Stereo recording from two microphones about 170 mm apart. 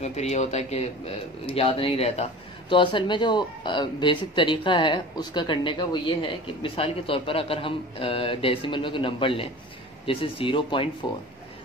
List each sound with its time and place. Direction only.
0.0 s a man's voice: 40° left (ahead or behind)